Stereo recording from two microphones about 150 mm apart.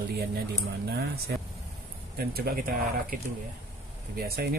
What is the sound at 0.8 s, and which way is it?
Speech, 90° right.